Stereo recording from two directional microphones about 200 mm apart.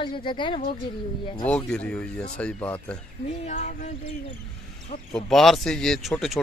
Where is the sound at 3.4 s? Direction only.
40° left (ahead or behind).